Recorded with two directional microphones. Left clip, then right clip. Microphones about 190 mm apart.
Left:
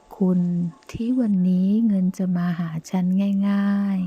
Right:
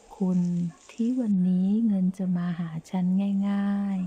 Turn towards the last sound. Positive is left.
turn(degrees=25)  # may be behind; listen again after turning